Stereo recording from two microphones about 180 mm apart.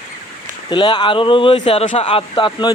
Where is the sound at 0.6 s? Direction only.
25° left (ahead or behind).